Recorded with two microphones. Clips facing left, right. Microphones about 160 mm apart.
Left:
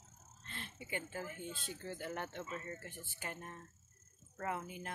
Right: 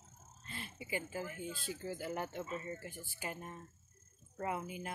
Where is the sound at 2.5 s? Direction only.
15° right (ahead or behind).